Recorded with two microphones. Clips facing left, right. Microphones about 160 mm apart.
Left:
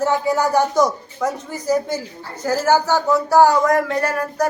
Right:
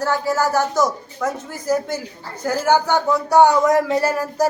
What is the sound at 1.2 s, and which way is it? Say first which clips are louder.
Speech: left 1 dB; 10° left (ahead or behind).